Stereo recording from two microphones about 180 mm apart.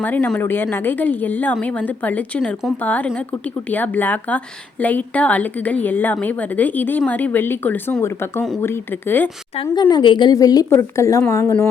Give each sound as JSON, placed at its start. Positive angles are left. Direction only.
{"t": 0.0, "sound": "a woman's voice", "side_deg": 10}
{"t": 9.8, "sound": "a woman's voice", "side_deg": 25}